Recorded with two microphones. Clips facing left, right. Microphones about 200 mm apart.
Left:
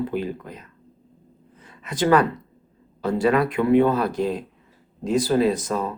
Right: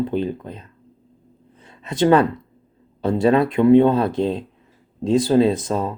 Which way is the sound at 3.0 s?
25° right (ahead or behind).